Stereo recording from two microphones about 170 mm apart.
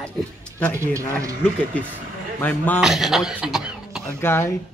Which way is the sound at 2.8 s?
Centre (ahead or behind).